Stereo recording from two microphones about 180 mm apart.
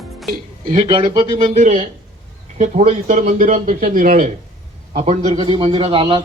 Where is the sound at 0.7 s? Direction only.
30° right (ahead or behind).